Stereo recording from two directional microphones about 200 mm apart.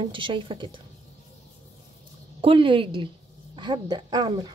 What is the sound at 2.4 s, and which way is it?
Speech, 25° right (ahead or behind).